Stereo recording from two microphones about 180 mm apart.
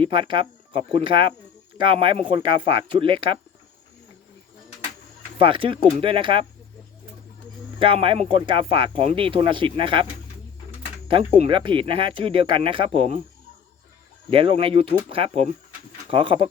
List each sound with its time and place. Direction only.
0.0 s speech: 30° right (ahead or behind)
5.4 s speech: 30° right (ahead or behind)
7.8 s speech: 30° right (ahead or behind)
11.3 s speech: 30° right (ahead or behind)
14.3 s speech: 30° right (ahead or behind)